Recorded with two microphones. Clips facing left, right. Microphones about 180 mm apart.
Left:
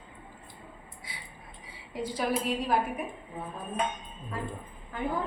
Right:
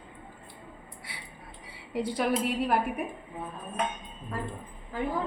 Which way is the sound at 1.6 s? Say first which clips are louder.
Right 4 dB; 65° right (ahead or behind).